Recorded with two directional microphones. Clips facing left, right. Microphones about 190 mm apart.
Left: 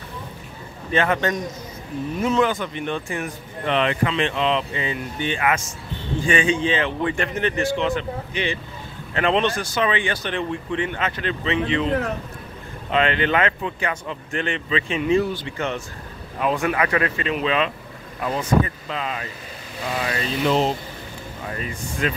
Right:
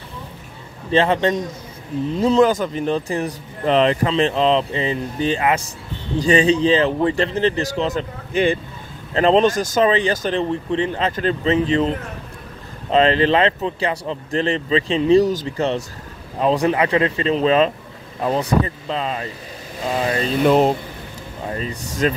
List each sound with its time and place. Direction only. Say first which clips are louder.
0.9 s a man's voice: right 4 dB; 30° right (ahead or behind)
12.9 s speech: right 5 dB; 35° right (ahead or behind)
20.4 s speech: right 5 dB; 50° right (ahead or behind)
21.5 s a man's voice: right 4 dB; 30° right (ahead or behind)